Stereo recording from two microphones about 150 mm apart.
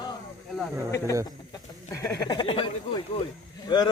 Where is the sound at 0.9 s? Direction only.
20° left (ahead or behind).